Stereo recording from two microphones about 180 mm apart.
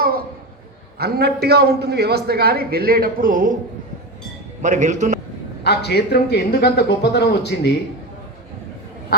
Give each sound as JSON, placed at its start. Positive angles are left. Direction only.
{"t": 0.9, "sound": "a man's voice", "side_deg": -60}
{"t": 4.6, "sound": "a man's voice", "side_deg": -45}
{"t": 5.6, "sound": "a man's voice", "side_deg": 65}